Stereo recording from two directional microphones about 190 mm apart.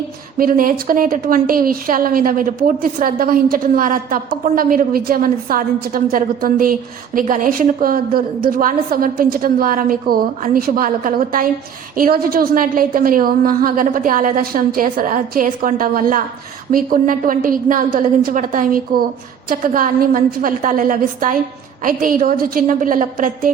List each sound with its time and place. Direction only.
0.3 s a woman's voice: 50° right (ahead or behind)